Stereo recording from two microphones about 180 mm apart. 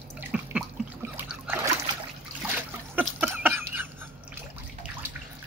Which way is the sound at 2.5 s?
10° right (ahead or behind).